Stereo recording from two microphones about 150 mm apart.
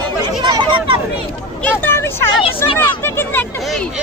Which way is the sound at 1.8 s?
15° left (ahead or behind).